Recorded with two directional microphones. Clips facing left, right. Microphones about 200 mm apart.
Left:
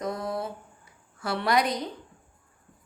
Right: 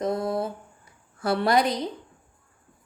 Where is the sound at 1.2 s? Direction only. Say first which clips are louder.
Right 4 dB; 35° right (ahead or behind).